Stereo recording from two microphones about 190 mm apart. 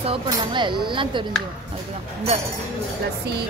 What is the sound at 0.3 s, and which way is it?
Speech, 25° right (ahead or behind).